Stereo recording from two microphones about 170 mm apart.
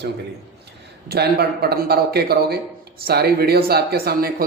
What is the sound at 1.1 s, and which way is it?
Speech, 70° right (ahead or behind).